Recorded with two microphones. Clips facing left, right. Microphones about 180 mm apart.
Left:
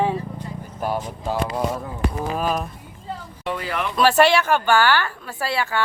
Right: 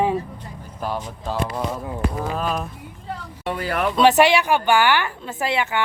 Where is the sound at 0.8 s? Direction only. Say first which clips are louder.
Left 2 dB; 10° left (ahead or behind).